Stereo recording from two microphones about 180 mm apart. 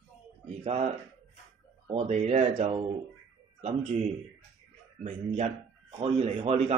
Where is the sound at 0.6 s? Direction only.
35° right (ahead or behind).